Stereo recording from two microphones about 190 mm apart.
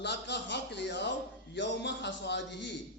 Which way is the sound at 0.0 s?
65° left (ahead or behind).